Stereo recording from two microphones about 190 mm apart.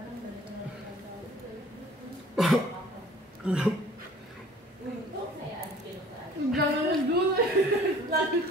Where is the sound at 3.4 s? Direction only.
5° right (ahead or behind).